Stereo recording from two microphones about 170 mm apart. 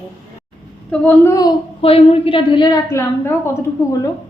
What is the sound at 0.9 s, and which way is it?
Speech, 10° left (ahead or behind).